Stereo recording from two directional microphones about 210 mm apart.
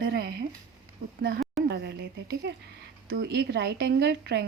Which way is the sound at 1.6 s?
55° right (ahead or behind).